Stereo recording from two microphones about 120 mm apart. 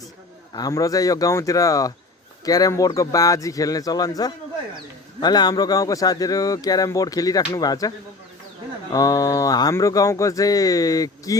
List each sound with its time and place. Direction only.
0.5 s a man's voice: 30° left (ahead or behind)